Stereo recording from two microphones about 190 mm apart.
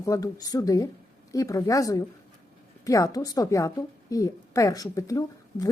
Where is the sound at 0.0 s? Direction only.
20° left (ahead or behind).